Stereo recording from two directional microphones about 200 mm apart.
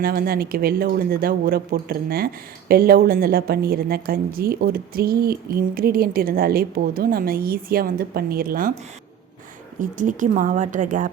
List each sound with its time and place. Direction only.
0.0 s speech: 50° right (ahead or behind)
9.7 s a woman's voice: 40° right (ahead or behind)